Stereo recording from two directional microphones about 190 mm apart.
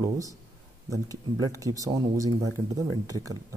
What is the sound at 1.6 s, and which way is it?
Speech, 20° right (ahead or behind).